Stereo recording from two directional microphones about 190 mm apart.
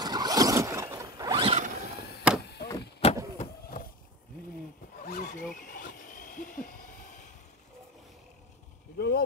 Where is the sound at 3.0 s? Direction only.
30° left (ahead or behind).